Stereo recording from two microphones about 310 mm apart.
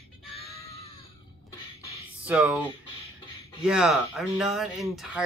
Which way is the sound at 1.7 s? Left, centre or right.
Centre.